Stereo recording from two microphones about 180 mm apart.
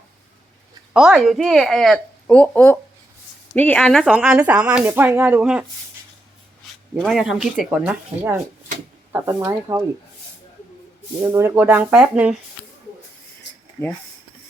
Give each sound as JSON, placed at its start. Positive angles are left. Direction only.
{"t": 0.9, "sound": "speech", "side_deg": -5}
{"t": 6.9, "sound": "speech", "side_deg": 0}
{"t": 9.1, "sound": "speech", "side_deg": -20}
{"t": 11.2, "sound": "speech", "side_deg": -15}